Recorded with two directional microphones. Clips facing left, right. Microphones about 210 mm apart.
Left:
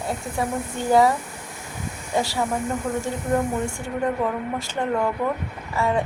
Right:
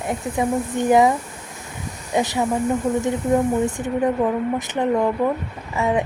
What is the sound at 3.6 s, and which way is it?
A woman's voice, 20° right (ahead or behind).